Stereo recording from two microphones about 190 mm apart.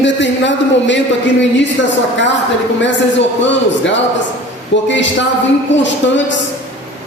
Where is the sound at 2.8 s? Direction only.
70° left (ahead or behind).